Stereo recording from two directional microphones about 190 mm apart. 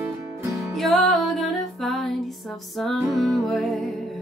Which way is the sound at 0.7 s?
Centre (ahead or behind).